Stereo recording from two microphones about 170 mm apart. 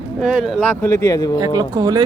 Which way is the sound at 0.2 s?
Centre (ahead or behind).